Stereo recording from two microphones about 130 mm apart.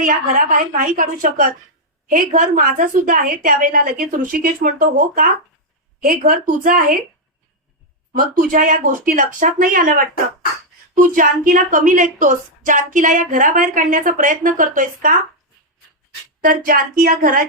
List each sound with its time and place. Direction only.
0.0 s a woman's voice: 90° right
8.1 s a woman's voice: 90° right
16.4 s a woman's voice: 90° right